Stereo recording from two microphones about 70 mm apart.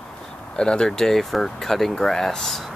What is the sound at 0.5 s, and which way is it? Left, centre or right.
Speech, centre.